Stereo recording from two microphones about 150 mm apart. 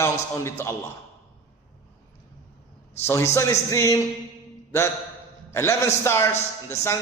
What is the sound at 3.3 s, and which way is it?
Speech, 20° left (ahead or behind).